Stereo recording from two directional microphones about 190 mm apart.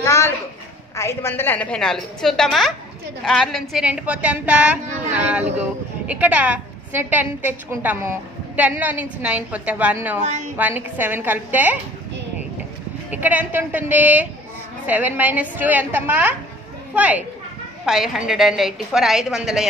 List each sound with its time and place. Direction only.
0.0 s a sound: 15° left (ahead or behind)
0.9 s a woman's voice: 15° left (ahead or behind); by 10.2 s 10° right (ahead or behind)
10.2 s a woman's voice: 35° right (ahead or behind)
10.6 s a woman's voice: 10° right (ahead or behind)
13.1 s a woman's voice: 10° right (ahead or behind)